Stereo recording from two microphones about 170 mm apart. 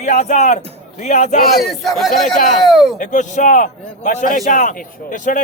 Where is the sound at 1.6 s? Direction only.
Centre (ahead or behind).